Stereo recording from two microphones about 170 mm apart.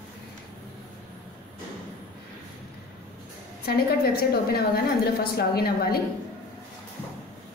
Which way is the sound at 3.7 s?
65° left (ahead or behind).